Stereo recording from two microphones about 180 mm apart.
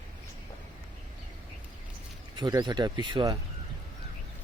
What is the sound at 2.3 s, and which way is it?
Speech, 25° right (ahead or behind).